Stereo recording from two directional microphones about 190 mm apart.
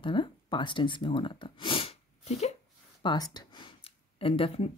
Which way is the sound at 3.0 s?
20° left (ahead or behind).